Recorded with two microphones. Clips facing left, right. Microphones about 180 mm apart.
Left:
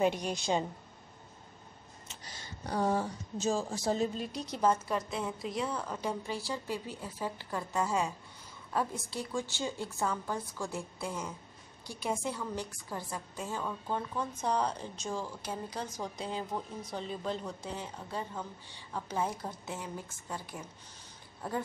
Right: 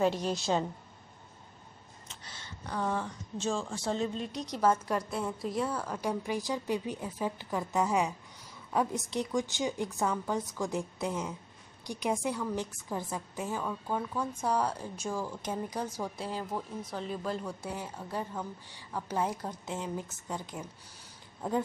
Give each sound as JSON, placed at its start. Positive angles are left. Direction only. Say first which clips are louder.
{"t": 0.0, "sound": "a woman's voice", "louder": "right 1 dB", "side_deg": 15}
{"t": 2.6, "sound": "speech", "louder": "left 3 dB", "side_deg": 40}
{"t": 3.9, "sound": "speech", "louder": "even", "side_deg": 5}
{"t": 4.8, "sound": "a woman's voice", "louder": "right 2 dB", "side_deg": -10}